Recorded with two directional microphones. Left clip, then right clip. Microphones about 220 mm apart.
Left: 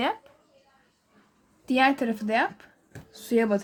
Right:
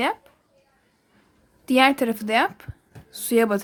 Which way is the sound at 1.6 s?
20° right (ahead or behind).